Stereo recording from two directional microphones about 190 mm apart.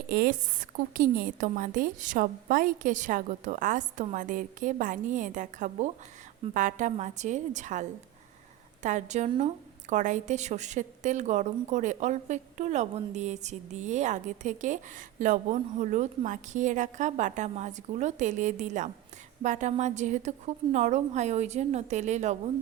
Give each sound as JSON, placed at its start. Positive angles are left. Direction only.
{"t": 0.1, "sound": "a woman's voice", "side_deg": -50}